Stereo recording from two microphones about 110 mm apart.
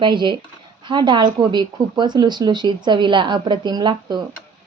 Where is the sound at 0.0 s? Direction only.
45° right (ahead or behind).